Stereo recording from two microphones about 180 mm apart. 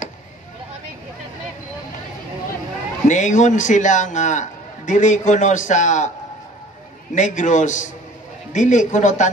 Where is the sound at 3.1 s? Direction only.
40° left (ahead or behind).